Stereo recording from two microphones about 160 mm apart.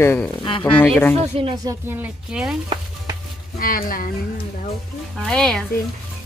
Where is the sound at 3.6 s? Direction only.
65° left (ahead or behind).